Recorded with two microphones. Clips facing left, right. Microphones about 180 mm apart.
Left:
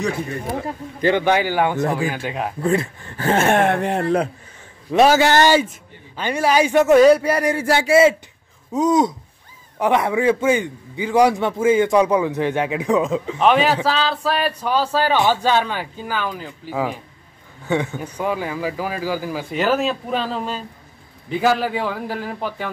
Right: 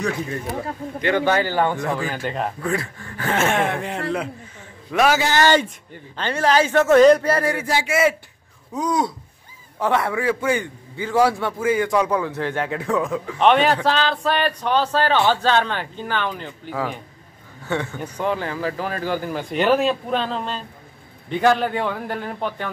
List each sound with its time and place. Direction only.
1.1 s a man's voice: 15° left (ahead or behind)
2.6 s a man's voice: 25° left (ahead or behind)
3.4 s speech: 55° left (ahead or behind)
4.9 s a man's voice: 35° left (ahead or behind)
5.4 s a man's voice: 10° left (ahead or behind)
7.8 s a man's voice: 30° left (ahead or behind)
13.4 s a man's voice: centre (ahead or behind)